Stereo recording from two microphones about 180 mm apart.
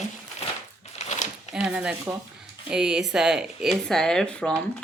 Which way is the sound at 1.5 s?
5° right (ahead or behind).